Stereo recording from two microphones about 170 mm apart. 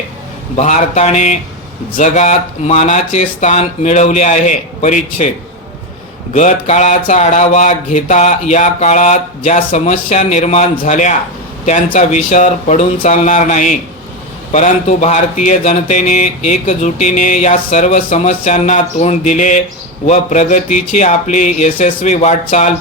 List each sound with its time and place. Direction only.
0.5 s speech: 45° left (ahead or behind)
6.3 s speech: 45° left (ahead or behind)